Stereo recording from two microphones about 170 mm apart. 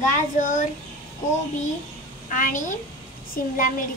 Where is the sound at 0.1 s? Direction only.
50° left (ahead or behind).